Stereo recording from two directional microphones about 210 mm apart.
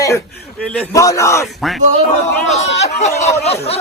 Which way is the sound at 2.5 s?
30° left (ahead or behind).